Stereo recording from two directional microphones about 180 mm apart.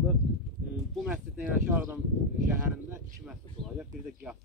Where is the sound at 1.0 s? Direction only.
10° right (ahead or behind).